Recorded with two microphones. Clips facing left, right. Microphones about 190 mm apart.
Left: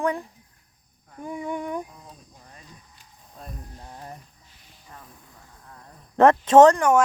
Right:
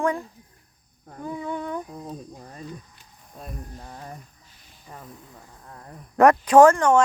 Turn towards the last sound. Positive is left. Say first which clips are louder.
# even
turn(degrees=20)  # may be behind; listen again after turning